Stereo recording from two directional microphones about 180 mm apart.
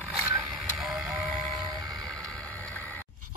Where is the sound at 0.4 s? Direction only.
Centre (ahead or behind).